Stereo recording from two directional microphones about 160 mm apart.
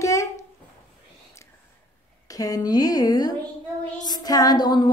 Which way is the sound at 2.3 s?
20° left (ahead or behind).